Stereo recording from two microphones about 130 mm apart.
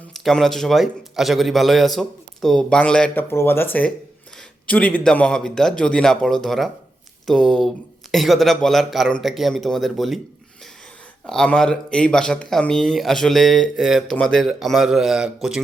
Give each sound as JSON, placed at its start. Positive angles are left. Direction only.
{"t": 0.1, "sound": "speech", "side_deg": 0}
{"t": 3.2, "sound": "speech", "side_deg": 20}
{"t": 11.3, "sound": "speech", "side_deg": 5}